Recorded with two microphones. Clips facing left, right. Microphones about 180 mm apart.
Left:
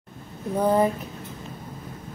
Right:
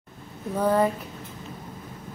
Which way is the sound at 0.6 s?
20° left (ahead or behind).